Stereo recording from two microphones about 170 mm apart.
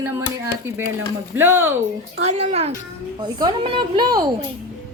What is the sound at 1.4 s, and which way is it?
Speech, 10° right (ahead or behind).